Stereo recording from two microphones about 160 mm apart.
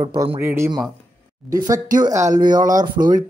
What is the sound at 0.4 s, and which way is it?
Speech, 15° right (ahead or behind).